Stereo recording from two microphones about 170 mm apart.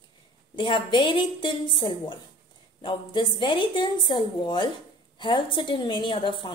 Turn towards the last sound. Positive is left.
turn(degrees=30)  # may be behind; listen again after turning